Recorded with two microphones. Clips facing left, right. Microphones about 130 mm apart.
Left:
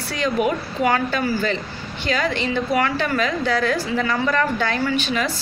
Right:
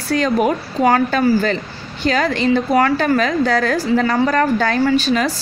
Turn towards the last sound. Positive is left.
turn(degrees=-40)  # may be behind; listen again after turning